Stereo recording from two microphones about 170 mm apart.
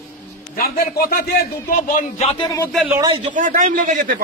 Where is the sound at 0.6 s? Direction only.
60° left (ahead or behind); by 2.6 s 30° left (ahead or behind).